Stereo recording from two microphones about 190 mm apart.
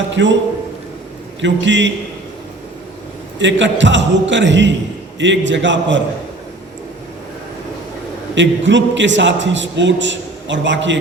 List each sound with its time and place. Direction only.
0.1 s a man's voice: 70° right (ahead or behind)
1.4 s a man's voice: 70° right (ahead or behind)
3.3 s a man's voice: 75° right (ahead or behind)
8.4 s a man's voice: 70° right (ahead or behind)